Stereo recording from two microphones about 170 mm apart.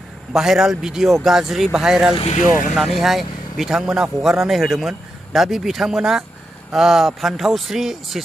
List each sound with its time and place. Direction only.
0.3 s a man's voice: 5° right (ahead or behind)
2.1 s speech: 40° left (ahead or behind)
2.7 s a man's voice: centre (ahead or behind)